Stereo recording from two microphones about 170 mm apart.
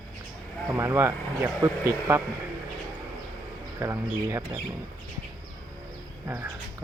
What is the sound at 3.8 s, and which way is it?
Speech, 15° right (ahead or behind).